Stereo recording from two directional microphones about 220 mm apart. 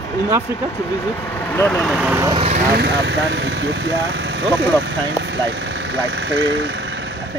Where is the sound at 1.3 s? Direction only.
10° left (ahead or behind); by 2.3 s 10° right (ahead or behind).